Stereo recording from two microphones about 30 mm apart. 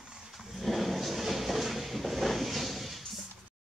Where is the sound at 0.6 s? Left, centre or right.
Centre.